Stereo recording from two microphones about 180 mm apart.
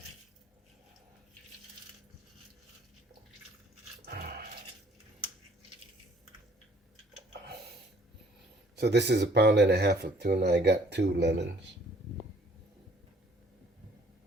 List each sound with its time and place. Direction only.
4.0 s dog: 55° right (ahead or behind)
8.8 s speech: 70° right (ahead or behind)